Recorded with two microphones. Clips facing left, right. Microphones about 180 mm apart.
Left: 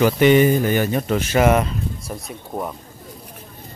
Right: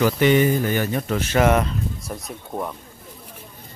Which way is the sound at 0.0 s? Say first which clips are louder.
Left 3 dB; 20° left (ahead or behind).